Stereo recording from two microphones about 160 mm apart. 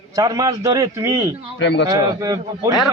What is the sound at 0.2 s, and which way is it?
A man's voice, 25° right (ahead or behind).